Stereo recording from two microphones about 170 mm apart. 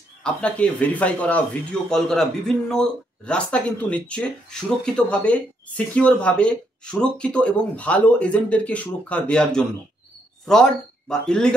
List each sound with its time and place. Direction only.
0.2 s speech: 5° left (ahead or behind)